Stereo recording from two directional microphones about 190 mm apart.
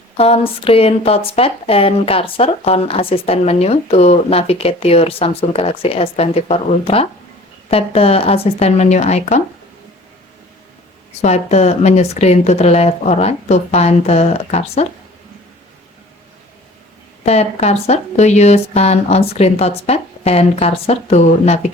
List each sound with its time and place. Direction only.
0.2 s speech: 30° left (ahead or behind)
11.2 s speech: 35° left (ahead or behind)
17.2 s speech: 35° left (ahead or behind)